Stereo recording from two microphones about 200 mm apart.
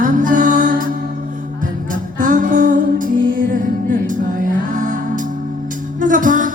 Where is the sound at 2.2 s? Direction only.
40° right (ahead or behind).